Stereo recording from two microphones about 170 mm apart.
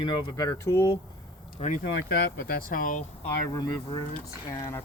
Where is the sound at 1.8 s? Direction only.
80° left; by 3.0 s 55° left (ahead or behind).